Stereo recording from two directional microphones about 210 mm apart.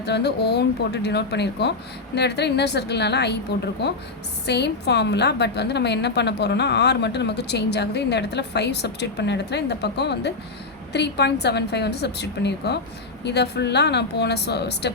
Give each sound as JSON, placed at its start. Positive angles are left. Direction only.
{"t": 0.0, "sound": "a woman's voice", "side_deg": 55}